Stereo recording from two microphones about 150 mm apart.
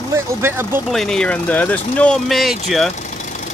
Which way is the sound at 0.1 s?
15° right (ahead or behind).